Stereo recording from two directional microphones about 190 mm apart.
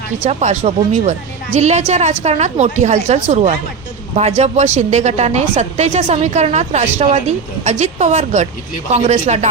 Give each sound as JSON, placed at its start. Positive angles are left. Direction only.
{"t": 0.3, "sound": "a woman's voice", "side_deg": -35}